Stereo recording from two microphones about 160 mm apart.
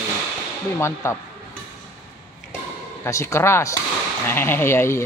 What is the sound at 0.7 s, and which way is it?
Speech, 15° left (ahead or behind).